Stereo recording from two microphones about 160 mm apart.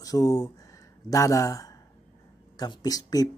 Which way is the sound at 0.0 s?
20° left (ahead or behind).